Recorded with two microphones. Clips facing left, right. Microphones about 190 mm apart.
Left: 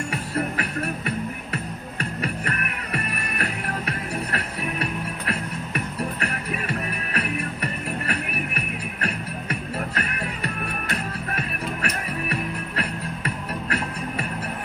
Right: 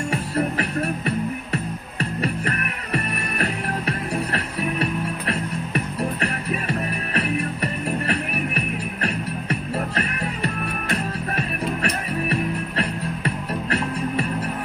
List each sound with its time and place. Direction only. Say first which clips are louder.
0.1 s music: right 5 dB; 30° right (ahead or behind)